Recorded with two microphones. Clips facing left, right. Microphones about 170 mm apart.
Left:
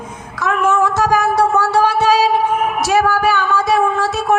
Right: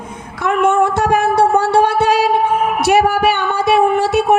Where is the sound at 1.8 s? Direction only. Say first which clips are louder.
Even; 55° right (ahead or behind).